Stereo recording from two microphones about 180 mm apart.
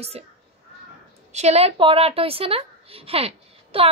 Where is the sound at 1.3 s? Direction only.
35° right (ahead or behind).